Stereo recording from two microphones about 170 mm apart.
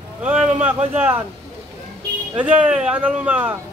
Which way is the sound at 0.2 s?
5° right (ahead or behind).